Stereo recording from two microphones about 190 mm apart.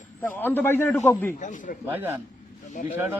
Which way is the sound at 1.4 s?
40° left (ahead or behind).